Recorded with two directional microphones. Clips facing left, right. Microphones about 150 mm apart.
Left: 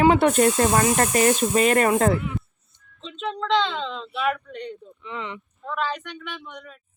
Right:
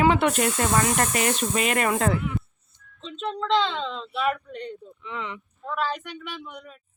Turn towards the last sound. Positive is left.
turn(degrees=-5)  # may be behind; listen again after turning